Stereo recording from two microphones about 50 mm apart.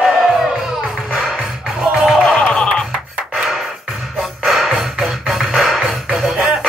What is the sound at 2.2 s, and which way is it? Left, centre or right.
Music, centre.